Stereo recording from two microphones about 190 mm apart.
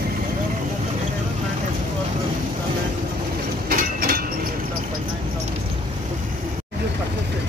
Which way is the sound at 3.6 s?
50° right (ahead or behind).